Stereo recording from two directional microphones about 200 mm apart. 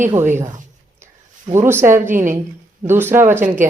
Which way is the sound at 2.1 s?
40° right (ahead or behind).